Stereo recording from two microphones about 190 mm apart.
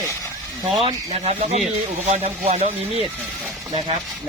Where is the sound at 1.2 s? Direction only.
35° right (ahead or behind).